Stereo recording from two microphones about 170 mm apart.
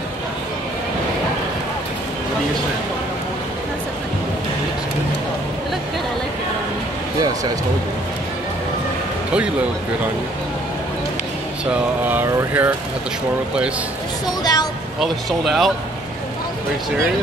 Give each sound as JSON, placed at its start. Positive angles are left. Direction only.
{"t": 11.6, "sound": "speech", "side_deg": -10}
{"t": 14.4, "sound": "speech", "side_deg": 25}
{"t": 15.0, "sound": "speech", "side_deg": 0}